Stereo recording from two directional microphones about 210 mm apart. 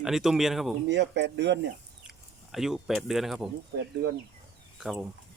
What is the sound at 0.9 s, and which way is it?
Speech, 55° right (ahead or behind).